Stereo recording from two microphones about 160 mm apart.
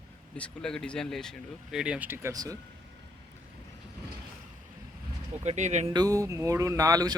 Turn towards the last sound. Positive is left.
turn(degrees=-20)  # may be behind; listen again after turning